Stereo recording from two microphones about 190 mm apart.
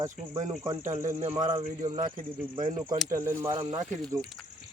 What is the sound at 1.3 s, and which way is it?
Speech, 20° right (ahead or behind).